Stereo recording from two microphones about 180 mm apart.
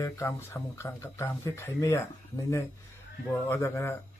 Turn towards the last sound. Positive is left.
turn(degrees=15)  # may be behind; listen again after turning